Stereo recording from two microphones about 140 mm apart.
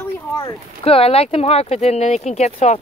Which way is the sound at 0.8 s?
45° left (ahead or behind).